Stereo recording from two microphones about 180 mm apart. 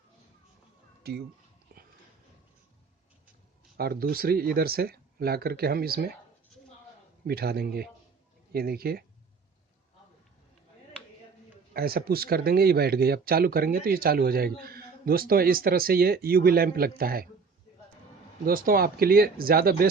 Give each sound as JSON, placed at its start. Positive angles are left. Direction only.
{"t": 1.0, "sound": "speech", "side_deg": -60}
{"t": 1.7, "sound": "dog", "side_deg": -60}
{"t": 3.8, "sound": "speech", "side_deg": -55}
{"t": 7.3, "sound": "speech", "side_deg": -60}
{"t": 11.7, "sound": "speech", "side_deg": -55}
{"t": 18.4, "sound": "speech", "side_deg": -55}